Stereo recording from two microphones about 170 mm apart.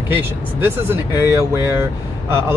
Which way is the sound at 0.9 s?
15° right (ahead or behind).